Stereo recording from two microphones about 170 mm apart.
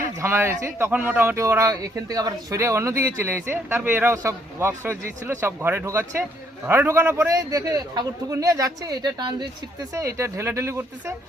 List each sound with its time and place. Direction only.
0.2 s a man's voice: 15° right (ahead or behind)